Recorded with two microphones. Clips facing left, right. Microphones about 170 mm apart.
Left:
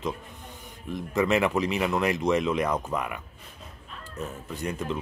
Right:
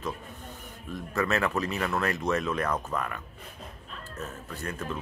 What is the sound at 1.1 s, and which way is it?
Speech, 15° left (ahead or behind).